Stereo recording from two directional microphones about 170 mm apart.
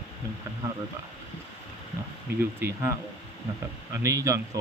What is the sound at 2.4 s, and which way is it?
Speech, 15° right (ahead or behind).